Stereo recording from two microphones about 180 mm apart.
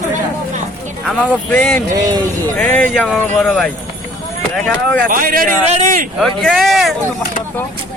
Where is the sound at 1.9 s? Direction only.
20° right (ahead or behind).